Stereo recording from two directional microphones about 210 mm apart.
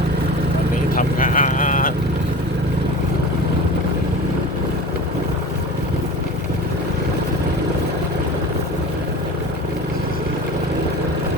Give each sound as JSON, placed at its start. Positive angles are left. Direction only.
{"t": 0.9, "sound": "vehicle", "side_deg": 40}